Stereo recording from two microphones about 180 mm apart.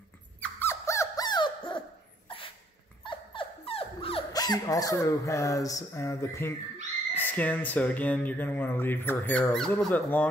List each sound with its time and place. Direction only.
0.4 s squawk: 10° left (ahead or behind)
2.2 s a sound: 30° left (ahead or behind)
3.0 s dog: 25° left (ahead or behind)
4.3 s speech: 20° left (ahead or behind)